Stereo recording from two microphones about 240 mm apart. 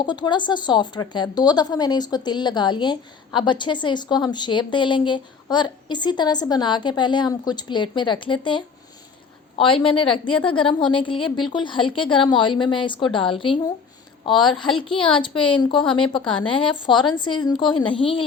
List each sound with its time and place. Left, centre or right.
0.0 s a woman's voice: centre
15.7 s a woman's voice: centre
16.0 s a woman's voice: centre